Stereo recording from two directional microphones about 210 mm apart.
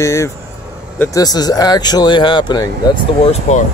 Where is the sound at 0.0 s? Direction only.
15° left (ahead or behind).